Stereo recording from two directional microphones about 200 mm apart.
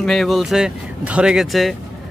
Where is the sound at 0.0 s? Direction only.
Centre (ahead or behind).